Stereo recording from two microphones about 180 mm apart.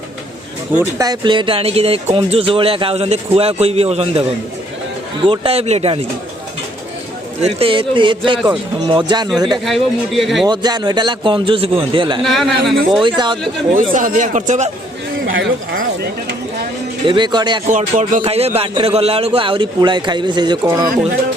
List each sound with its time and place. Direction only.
0.7 s speech: 10° right (ahead or behind)
1.0 s a man's voice: 25° right (ahead or behind)
5.2 s a man's voice: 30° right (ahead or behind)
7.4 s a man's voice: 30° right (ahead or behind)
9.6 s a man's voice: centre (ahead or behind)
10.4 s a man's voice: 25° right (ahead or behind)
12.2 s a man's voice: centre (ahead or behind)
13.0 s a man's voice: 25° right (ahead or behind)
13.9 s a man's voice: 45° right (ahead or behind)
17.1 s a man's voice: 25° right (ahead or behind)
17.7 s a man's voice: 45° right (ahead or behind)
18.2 s a man's voice: 35° right (ahead or behind)